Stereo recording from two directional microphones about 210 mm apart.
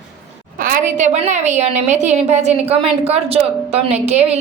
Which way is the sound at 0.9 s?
35° right (ahead or behind).